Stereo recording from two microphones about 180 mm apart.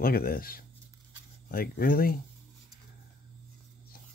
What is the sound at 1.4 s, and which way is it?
Speech, 55° left (ahead or behind).